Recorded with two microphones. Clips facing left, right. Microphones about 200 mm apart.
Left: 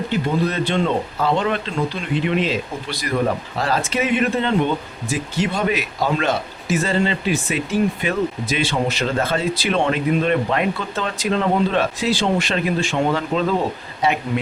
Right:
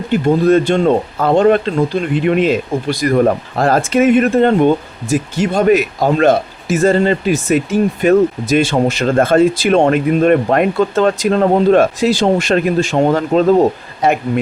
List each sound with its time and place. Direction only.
0.1 s speech: 45° right (ahead or behind)